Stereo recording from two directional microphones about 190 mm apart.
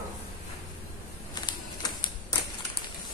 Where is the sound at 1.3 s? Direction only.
20° left (ahead or behind).